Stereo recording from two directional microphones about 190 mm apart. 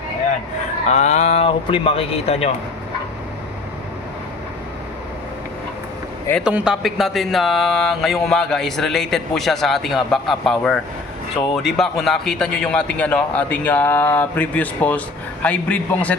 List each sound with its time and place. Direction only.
0.9 s speech: 35° left (ahead or behind)
6.4 s a man's voice: 5° right (ahead or behind)